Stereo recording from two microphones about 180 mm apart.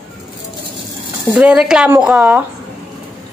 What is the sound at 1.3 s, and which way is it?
A woman's voice, 5° right (ahead or behind).